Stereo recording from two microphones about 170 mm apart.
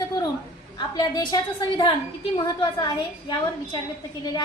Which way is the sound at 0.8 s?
25° left (ahead or behind).